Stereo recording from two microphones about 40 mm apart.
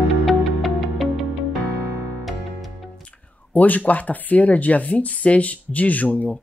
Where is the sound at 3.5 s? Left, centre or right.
Left.